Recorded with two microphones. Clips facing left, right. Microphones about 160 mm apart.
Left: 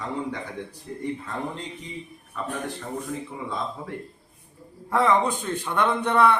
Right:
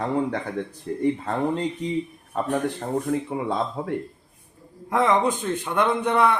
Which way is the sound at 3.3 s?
75° right (ahead or behind).